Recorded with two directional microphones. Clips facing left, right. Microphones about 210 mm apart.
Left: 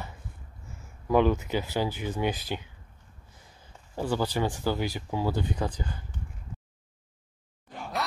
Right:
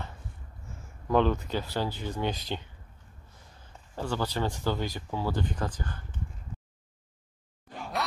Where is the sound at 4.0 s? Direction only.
10° left (ahead or behind).